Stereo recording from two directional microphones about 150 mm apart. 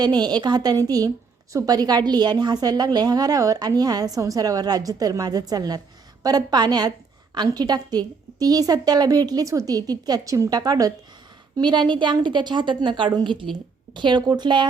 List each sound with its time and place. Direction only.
0.0 s a woman's voice: 30° right (ahead or behind)